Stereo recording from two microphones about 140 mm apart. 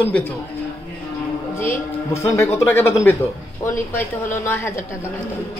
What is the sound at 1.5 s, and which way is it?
A woman's voice, 20° left (ahead or behind).